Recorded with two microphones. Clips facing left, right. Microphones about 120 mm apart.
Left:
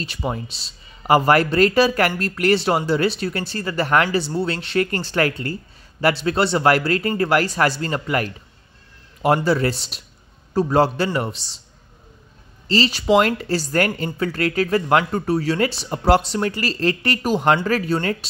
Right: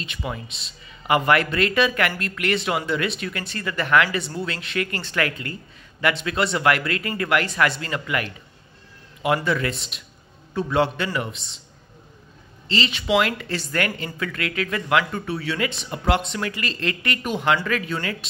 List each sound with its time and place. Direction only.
0.0 s speech: 35° left (ahead or behind)
12.6 s speech: 35° left (ahead or behind)